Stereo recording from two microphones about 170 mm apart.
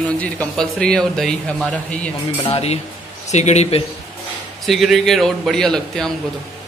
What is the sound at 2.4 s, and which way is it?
A man's voice, 35° left (ahead or behind).